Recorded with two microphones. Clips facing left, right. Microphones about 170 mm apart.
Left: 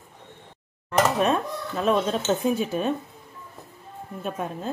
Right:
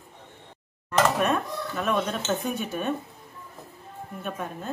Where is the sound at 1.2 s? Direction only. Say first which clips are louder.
Left 2 dB; 30° left (ahead or behind).